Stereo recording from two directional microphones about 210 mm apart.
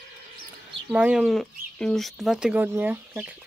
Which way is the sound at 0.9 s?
5° right (ahead or behind).